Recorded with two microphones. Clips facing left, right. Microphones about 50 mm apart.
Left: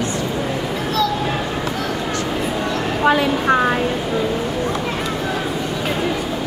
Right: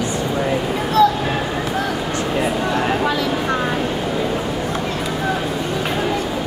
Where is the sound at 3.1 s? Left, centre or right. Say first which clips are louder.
Left 4 dB; left.